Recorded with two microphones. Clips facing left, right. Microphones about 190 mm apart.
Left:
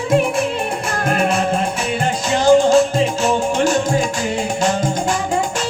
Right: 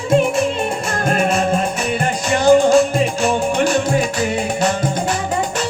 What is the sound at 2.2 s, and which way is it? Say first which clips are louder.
Music: even; 10° right (ahead or behind).